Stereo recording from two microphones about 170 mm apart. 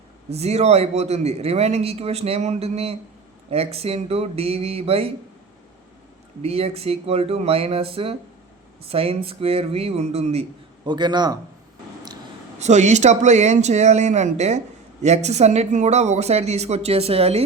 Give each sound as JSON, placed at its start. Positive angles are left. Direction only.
{"t": 0.3, "sound": "a man's voice", "side_deg": -40}
{"t": 6.4, "sound": "a man's voice", "side_deg": -35}
{"t": 10.8, "sound": "a man's voice", "side_deg": -25}
{"t": 12.5, "sound": "a man's voice", "side_deg": -45}